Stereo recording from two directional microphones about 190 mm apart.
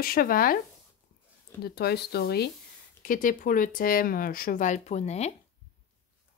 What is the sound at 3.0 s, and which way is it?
Speech, 45° left (ahead or behind).